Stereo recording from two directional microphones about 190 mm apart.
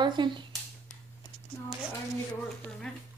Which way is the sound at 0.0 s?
25° right (ahead or behind).